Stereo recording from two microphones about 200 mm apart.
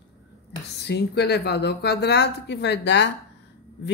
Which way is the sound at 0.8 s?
55° left (ahead or behind).